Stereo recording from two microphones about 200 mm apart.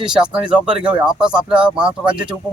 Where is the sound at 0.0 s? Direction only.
5° right (ahead or behind).